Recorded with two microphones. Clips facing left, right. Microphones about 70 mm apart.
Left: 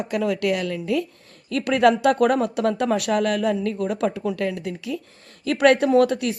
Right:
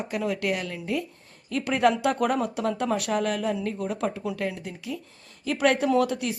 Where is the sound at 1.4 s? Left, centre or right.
Left.